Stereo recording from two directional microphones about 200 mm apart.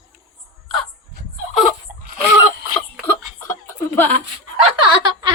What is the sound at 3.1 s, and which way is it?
Chuckle, 15° left (ahead or behind).